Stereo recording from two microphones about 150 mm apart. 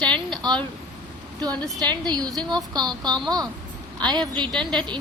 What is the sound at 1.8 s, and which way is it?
A woman's voice, 25° right (ahead or behind).